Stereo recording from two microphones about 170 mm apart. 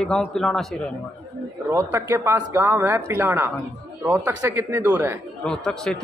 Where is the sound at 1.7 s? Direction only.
15° right (ahead or behind).